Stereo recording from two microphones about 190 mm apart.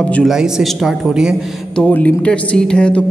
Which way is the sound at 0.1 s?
Centre (ahead or behind).